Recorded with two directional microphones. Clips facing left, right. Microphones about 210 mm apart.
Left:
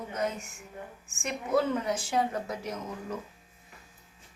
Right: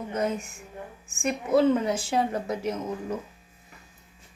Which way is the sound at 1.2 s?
25° right (ahead or behind).